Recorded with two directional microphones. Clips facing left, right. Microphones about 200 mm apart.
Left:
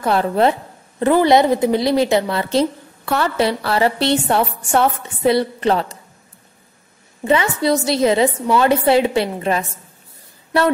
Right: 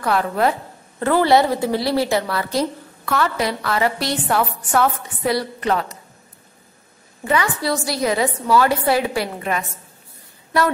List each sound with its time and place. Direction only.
0.0 s a woman's voice: 25° left (ahead or behind)
7.2 s a woman's voice: 20° left (ahead or behind)